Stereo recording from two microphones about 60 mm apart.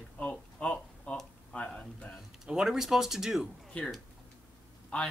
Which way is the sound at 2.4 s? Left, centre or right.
Centre.